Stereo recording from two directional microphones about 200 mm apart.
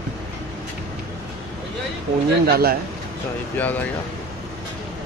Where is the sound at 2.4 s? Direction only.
50° right (ahead or behind).